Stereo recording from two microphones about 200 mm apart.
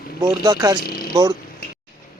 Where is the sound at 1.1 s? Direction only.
20° right (ahead or behind).